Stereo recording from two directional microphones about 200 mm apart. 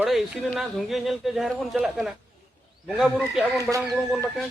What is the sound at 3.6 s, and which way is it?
Speech, 15° right (ahead or behind).